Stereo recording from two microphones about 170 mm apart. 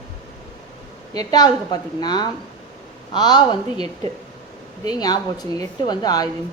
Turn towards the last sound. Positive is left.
turn(degrees=25)  # may be behind; listen again after turning